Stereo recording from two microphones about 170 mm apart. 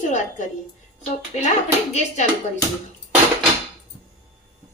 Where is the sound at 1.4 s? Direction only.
45° left (ahead or behind).